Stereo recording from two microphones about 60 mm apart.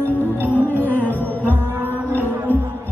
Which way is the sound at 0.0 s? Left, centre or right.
Left.